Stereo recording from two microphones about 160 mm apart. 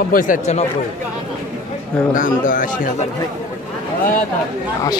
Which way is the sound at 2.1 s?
55° left (ahead or behind).